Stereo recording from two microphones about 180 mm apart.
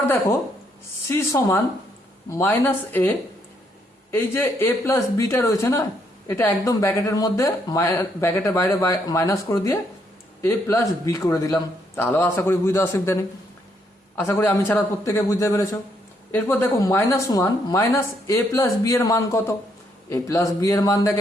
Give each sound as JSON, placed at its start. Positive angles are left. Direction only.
{"t": 0.0, "sound": "speech", "side_deg": 10}